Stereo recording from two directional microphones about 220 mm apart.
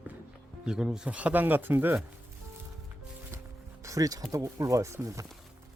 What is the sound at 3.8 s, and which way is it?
Music, 15° right (ahead or behind).